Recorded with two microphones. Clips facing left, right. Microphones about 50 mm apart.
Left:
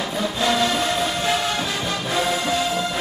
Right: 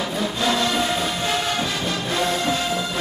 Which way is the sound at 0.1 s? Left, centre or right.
Centre.